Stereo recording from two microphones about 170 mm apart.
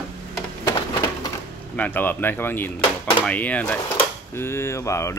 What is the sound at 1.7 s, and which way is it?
Speech, 10° left (ahead or behind).